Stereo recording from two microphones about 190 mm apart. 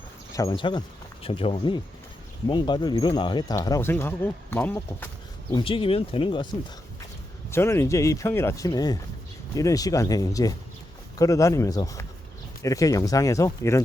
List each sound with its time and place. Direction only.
0.3 s speech: 25° left (ahead or behind)
5.5 s speech: 25° left (ahead or behind)
7.5 s speech: 15° left (ahead or behind)